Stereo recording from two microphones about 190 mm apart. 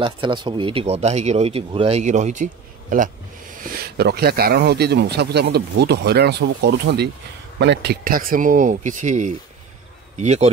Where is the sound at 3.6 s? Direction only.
50° right (ahead or behind).